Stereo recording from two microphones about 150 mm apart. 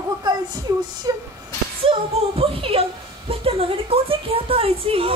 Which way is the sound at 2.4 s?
40° right (ahead or behind).